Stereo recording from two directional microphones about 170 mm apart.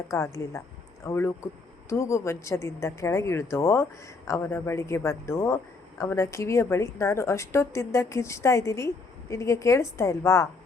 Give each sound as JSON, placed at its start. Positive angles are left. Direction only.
{"t": 0.1, "sound": "a woman's voice", "side_deg": 20}